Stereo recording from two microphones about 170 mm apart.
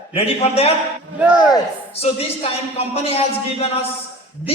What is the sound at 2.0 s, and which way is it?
Speech, 35° left (ahead or behind).